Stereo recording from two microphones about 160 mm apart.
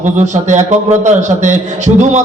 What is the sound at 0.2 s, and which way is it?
A man's voice, 45° right (ahead or behind).